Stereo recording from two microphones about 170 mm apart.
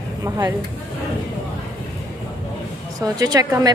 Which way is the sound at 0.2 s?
20° right (ahead or behind).